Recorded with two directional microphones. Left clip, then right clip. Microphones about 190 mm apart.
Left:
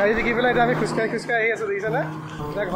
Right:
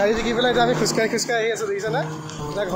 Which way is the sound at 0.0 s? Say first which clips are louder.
Even; 20° right (ahead or behind).